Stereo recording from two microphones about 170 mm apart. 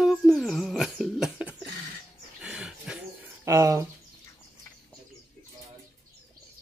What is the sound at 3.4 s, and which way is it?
Speech, 20° right (ahead or behind).